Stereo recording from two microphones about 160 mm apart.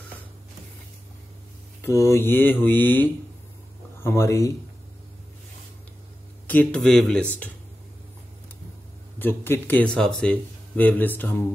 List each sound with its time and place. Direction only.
1.8 s speech: 20° left (ahead or behind)
6.4 s speech: 10° left (ahead or behind)
9.2 s speech: 15° left (ahead or behind)